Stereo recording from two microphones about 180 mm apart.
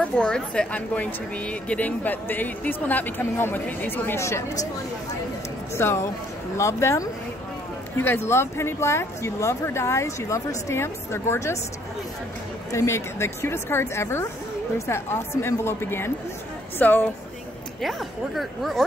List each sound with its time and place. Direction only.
0.0 s speech: 5° left (ahead or behind)
5.8 s speech: 15° left (ahead or behind)
12.7 s speech: 15° left (ahead or behind)
17.8 s speech: centre (ahead or behind)